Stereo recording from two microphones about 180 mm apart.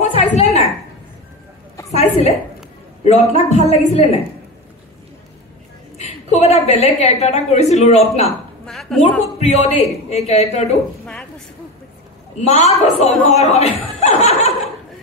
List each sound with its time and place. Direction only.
0.1 s a sound: 35° left (ahead or behind)
1.9 s a woman's voice: 35° left (ahead or behind)
5.9 s a woman's voice: 35° left (ahead or behind)
8.6 s a woman's voice: 5° left (ahead or behind)
9.4 s a woman's voice: 35° left (ahead or behind)
11.1 s a sound: 5° left (ahead or behind)
12.4 s speech: 35° left (ahead or behind)